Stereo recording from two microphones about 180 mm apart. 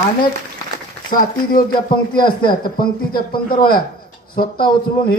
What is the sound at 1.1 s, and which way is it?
Speech, 50° left (ahead or behind).